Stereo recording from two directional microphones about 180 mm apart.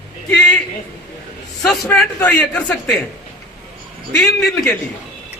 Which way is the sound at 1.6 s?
5° left (ahead or behind).